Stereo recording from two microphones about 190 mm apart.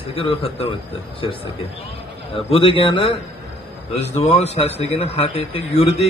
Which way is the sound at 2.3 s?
30° left (ahead or behind).